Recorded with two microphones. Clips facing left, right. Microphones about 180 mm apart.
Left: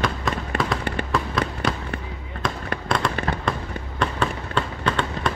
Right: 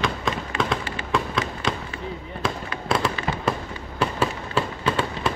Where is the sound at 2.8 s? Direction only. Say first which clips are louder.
Right 1 dB; 5° right (ahead or behind).